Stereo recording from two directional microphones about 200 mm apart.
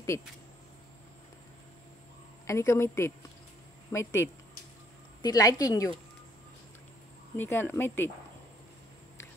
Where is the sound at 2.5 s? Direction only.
15° left (ahead or behind).